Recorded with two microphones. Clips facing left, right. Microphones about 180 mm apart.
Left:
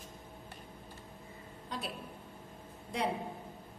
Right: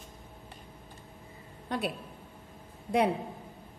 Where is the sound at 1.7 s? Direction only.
60° right (ahead or behind).